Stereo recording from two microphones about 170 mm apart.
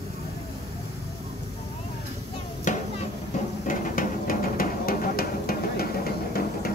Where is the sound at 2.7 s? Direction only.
50° left (ahead or behind).